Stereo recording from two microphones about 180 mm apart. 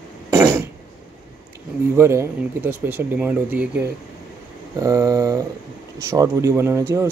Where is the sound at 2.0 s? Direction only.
15° right (ahead or behind).